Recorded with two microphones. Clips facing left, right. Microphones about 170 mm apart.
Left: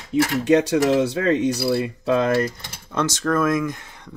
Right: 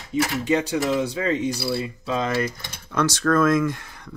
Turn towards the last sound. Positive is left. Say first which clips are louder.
# right 2 dB
turn(degrees=20)  # may be behind; listen again after turning